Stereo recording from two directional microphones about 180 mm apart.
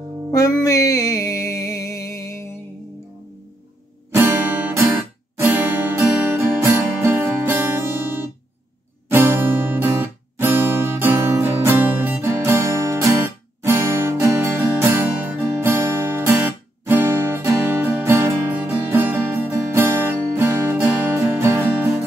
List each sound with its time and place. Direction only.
0.3 s music: 20° left (ahead or behind)
4.1 s music: 15° right (ahead or behind)